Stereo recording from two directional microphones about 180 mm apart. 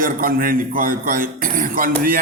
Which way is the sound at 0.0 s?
50° right (ahead or behind).